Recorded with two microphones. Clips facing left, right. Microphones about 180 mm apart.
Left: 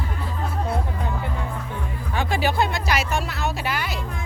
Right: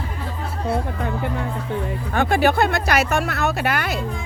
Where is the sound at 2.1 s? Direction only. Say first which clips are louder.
Right 5 dB; 55° right (ahead or behind).